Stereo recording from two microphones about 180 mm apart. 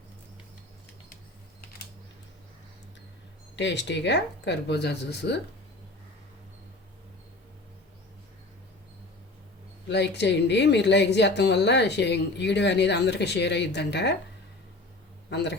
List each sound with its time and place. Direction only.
3.5 s a woman's voice: 80° left
9.9 s a woman's voice: 70° left (ahead or behind)
15.3 s a woman's voice: 70° left (ahead or behind)